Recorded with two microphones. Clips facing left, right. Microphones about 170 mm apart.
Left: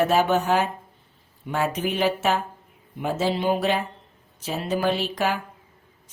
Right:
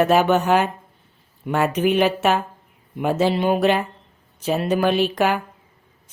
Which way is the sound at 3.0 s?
65° right (ahead or behind).